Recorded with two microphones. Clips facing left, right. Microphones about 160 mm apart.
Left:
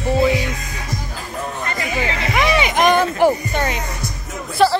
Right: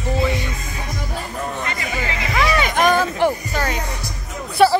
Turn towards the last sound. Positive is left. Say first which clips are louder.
# right 1 dB
turn(degrees=-5)  # may be behind; listen again after turning